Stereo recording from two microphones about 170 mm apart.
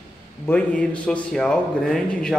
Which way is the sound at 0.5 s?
10° left (ahead or behind).